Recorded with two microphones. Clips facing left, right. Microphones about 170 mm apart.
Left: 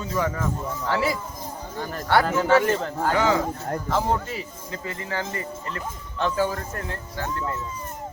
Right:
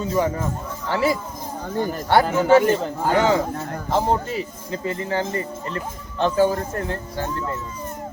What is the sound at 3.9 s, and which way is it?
Speech, 25° right (ahead or behind).